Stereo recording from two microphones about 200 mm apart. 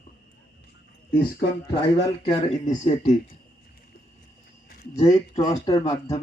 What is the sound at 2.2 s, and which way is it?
Speech, 25° left (ahead or behind).